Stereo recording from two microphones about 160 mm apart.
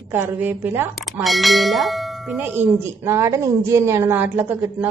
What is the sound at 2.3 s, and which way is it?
A woman's voice, 10° right (ahead or behind).